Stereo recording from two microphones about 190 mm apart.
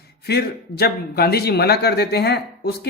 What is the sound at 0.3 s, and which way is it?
A man's voice, 55° left (ahead or behind).